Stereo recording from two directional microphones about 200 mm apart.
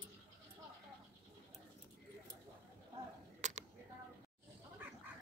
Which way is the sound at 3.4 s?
35° right (ahead or behind).